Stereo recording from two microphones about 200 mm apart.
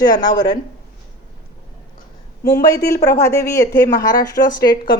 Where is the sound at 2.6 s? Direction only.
15° left (ahead or behind).